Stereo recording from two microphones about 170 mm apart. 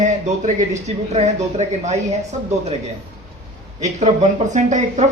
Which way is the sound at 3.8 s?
45° right (ahead or behind).